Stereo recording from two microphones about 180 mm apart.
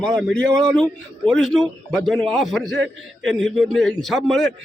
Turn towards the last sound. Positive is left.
turn(degrees=0)  # may be behind; listen again after turning